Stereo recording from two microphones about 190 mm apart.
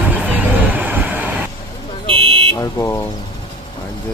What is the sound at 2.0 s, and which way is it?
Car alarm, 30° right (ahead or behind).